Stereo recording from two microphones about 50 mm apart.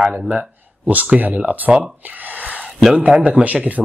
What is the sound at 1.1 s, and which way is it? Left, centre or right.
Speech, right.